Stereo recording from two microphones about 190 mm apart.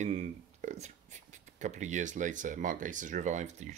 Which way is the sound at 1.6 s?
40° right (ahead or behind).